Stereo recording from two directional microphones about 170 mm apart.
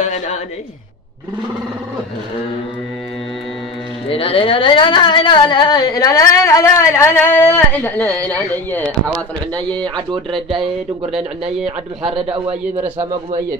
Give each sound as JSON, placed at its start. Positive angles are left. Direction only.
{"t": 4.1, "sound": "speech", "side_deg": 35}
{"t": 10.5, "sound": "speech", "side_deg": 0}
{"t": 12.0, "sound": "a man's voice", "side_deg": -30}